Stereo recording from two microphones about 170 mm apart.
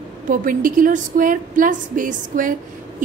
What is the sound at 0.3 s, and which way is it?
A woman's voice, 55° right (ahead or behind).